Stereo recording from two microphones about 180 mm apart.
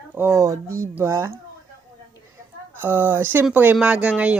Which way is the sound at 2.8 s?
10° right (ahead or behind).